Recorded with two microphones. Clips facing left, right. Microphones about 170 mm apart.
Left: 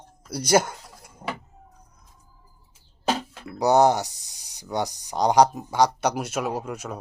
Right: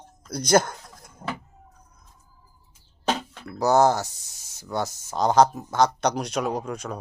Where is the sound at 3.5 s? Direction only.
15° left (ahead or behind).